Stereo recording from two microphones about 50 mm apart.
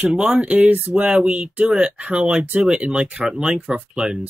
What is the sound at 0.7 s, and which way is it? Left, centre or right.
Speech, right.